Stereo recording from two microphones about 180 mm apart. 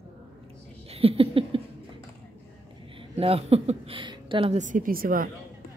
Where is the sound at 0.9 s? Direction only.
30° right (ahead or behind).